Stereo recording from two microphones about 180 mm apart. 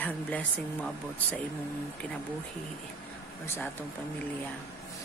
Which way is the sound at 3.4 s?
15° left (ahead or behind).